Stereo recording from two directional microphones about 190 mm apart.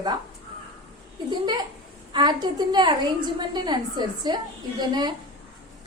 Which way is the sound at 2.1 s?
20° right (ahead or behind).